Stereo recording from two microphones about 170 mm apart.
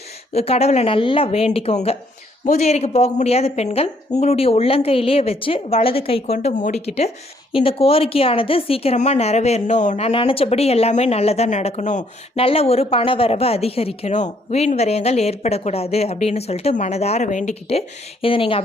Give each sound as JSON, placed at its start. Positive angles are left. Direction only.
{"t": 0.3, "sound": "speech", "side_deg": 35}
{"t": 10.1, "sound": "speech", "side_deg": 30}